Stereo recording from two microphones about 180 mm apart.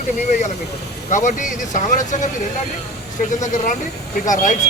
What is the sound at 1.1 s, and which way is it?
A man's voice, 45° left (ahead or behind).